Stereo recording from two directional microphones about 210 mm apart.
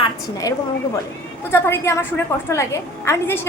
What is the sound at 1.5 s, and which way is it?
A woman's voice, 10° left (ahead or behind).